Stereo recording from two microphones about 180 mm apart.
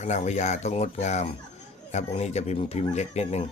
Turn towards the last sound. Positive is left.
turn(degrees=35)  # may be behind; listen again after turning